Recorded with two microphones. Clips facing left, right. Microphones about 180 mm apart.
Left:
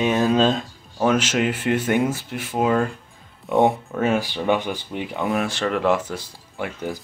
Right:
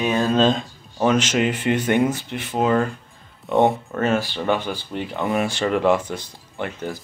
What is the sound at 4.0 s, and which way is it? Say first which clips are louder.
Speech: even; 15° left (ahead or behind).